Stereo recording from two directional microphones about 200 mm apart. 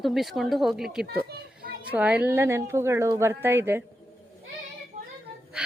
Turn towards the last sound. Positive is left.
turn(degrees=-5)  # may be behind; listen again after turning